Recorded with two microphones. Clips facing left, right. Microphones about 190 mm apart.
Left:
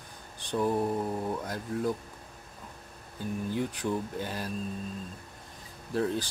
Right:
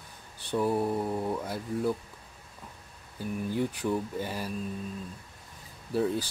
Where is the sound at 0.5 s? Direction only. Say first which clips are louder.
Right 1 dB; 5° right (ahead or behind).